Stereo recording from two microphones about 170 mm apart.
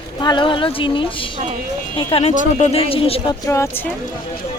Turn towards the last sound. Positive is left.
turn(degrees=15)  # may be behind; listen again after turning